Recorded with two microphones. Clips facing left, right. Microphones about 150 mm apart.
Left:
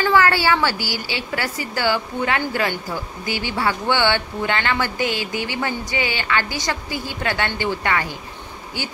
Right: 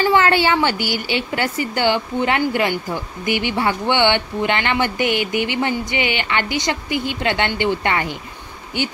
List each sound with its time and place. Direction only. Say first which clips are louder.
0.0 s a woman's voice: right 2 dB; 20° right (ahead or behind)